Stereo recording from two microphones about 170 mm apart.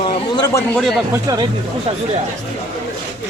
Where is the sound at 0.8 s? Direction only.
Centre (ahead or behind).